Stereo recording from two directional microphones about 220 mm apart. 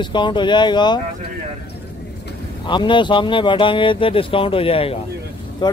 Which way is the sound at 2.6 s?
20° left (ahead or behind).